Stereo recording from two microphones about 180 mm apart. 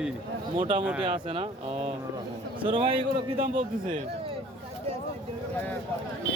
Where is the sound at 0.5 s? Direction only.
30° right (ahead or behind).